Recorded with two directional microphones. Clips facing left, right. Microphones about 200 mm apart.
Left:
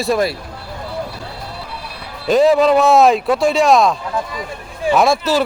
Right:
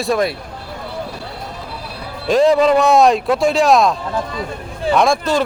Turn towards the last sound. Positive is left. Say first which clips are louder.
# left 1 dB
turn(degrees=5)  # may be behind; listen again after turning